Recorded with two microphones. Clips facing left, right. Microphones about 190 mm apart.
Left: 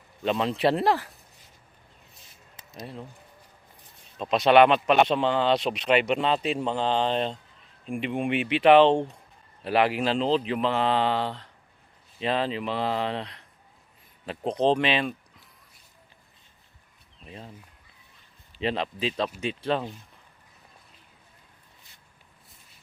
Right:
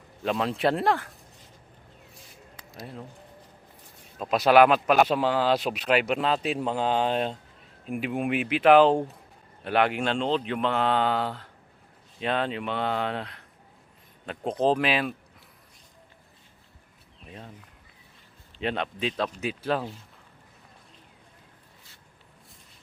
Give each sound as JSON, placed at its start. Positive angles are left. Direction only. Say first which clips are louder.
{"t": 0.2, "sound": "speech", "louder": "left 1 dB", "side_deg": 0}
{"t": 2.6, "sound": "a sound", "louder": "right 3 dB", "side_deg": 20}
{"t": 4.2, "sound": "speech", "louder": "even", "side_deg": -5}
{"t": 18.5, "sound": "speech", "louder": "left 1 dB", "side_deg": 0}